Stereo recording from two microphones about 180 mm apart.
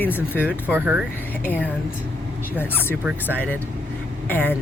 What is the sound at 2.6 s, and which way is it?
Speech, 10° left (ahead or behind).